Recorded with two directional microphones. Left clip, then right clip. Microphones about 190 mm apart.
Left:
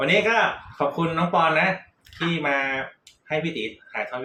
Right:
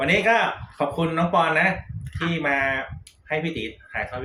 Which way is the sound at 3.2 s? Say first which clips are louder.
Even; 10° right (ahead or behind).